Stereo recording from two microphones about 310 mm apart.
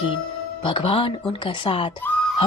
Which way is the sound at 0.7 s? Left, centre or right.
Centre.